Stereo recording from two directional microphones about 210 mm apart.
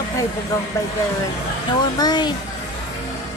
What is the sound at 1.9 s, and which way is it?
Speech, 20° left (ahead or behind).